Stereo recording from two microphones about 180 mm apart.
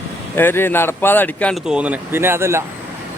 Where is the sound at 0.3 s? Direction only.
10° left (ahead or behind).